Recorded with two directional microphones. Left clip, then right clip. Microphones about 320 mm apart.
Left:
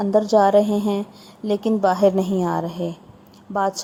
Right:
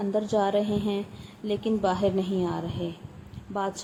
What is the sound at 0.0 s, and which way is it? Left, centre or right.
A woman's voice, centre.